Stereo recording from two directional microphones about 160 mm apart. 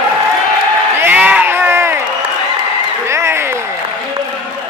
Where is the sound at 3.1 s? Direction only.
15° right (ahead or behind).